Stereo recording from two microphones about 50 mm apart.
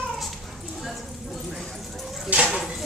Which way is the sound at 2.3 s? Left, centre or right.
Right.